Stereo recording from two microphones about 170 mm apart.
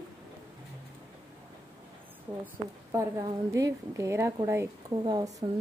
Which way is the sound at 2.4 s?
15° right (ahead or behind).